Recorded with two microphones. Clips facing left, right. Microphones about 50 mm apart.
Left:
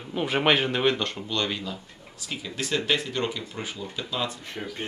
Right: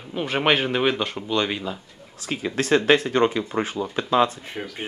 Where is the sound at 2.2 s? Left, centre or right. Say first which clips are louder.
Right 9 dB; right.